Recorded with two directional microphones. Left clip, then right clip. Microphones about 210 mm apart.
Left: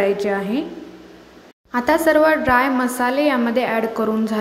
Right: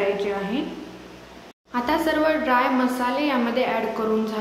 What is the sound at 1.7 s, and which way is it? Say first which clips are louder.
A woman's voice: left 7 dB; 30° left (ahead or behind).